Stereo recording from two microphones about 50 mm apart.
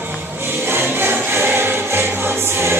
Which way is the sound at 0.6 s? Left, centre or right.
Right.